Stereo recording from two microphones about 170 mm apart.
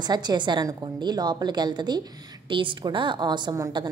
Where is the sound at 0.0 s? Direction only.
25° right (ahead or behind).